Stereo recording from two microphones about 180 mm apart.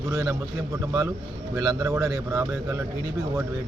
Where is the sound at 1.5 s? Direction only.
20° right (ahead or behind).